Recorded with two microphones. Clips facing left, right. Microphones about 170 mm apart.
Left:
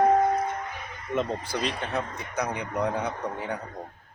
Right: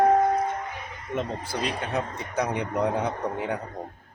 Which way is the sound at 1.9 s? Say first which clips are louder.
Right 2 dB; 25° right (ahead or behind).